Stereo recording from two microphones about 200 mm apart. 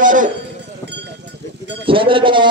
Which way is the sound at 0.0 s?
40° right (ahead or behind).